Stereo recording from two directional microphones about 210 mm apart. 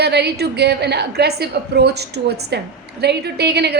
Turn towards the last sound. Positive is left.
turn(degrees=-50)  # may be behind; listen again after turning